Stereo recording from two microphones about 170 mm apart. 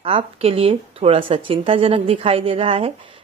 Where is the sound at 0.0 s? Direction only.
35° right (ahead or behind).